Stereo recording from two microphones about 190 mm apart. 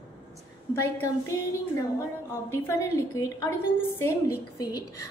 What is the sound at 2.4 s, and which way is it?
A woman's voice, 15° left (ahead or behind).